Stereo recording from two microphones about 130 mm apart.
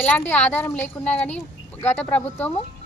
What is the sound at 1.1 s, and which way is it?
Speech, 60° left (ahead or behind).